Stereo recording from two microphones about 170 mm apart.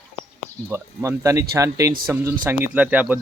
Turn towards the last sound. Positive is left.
turn(degrees=-10)  # may be behind; listen again after turning